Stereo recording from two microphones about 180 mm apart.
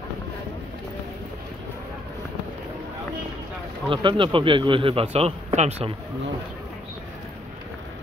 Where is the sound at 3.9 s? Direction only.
30° right (ahead or behind).